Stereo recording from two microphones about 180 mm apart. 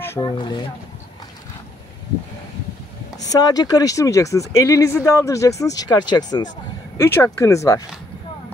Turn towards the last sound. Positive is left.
turn(degrees=20)  # may be behind; listen again after turning